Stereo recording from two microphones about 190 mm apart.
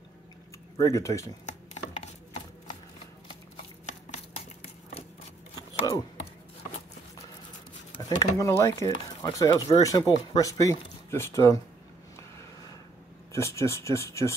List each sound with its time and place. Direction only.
0.7 s speech: 15° left (ahead or behind)
8.0 s speech: 15° left (ahead or behind)
13.3 s speech: 15° left (ahead or behind)